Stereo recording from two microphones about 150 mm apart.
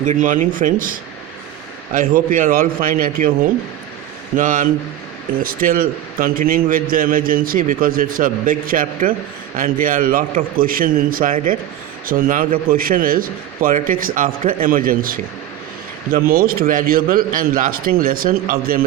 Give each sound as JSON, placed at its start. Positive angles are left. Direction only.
{"t": 0.0, "sound": "a man's voice", "side_deg": -55}
{"t": 5.4, "sound": "a man's voice", "side_deg": -70}